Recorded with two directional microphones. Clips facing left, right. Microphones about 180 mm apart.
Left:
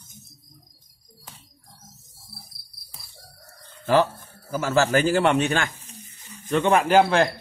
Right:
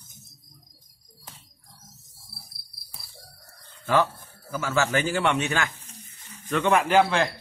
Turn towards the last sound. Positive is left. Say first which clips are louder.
# left 3 dB
turn(degrees=45)  # may be behind; listen again after turning